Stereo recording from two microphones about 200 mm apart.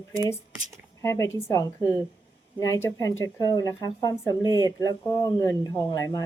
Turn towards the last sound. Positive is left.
turn(degrees=20)  # may be behind; listen again after turning